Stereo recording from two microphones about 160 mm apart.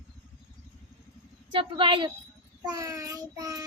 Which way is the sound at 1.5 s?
35° right (ahead or behind).